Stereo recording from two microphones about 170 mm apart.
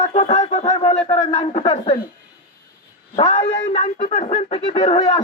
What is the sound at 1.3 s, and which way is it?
Speech, 35° left (ahead or behind).